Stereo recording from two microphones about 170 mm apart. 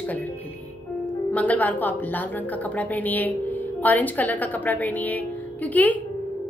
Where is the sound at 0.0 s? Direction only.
10° left (ahead or behind).